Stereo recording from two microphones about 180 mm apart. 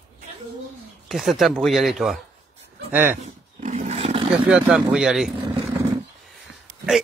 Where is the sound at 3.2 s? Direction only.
40° right (ahead or behind).